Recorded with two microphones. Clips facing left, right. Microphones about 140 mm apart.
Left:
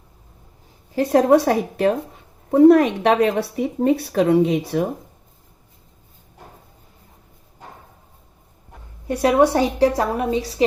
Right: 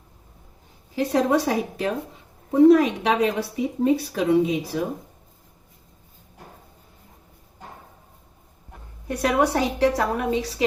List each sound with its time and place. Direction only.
0.9 s speech: 55° left (ahead or behind)
9.0 s a woman's voice: 30° left (ahead or behind)